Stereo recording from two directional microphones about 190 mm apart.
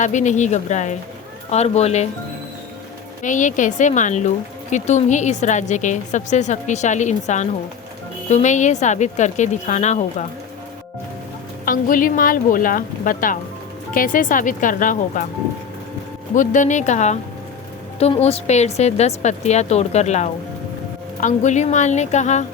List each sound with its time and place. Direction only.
0.0 s a woman's voice: 40° left (ahead or behind)
3.2 s a woman's voice: 40° left (ahead or behind)
11.6 s speech: 45° left (ahead or behind)
16.3 s a woman's voice: 40° left (ahead or behind)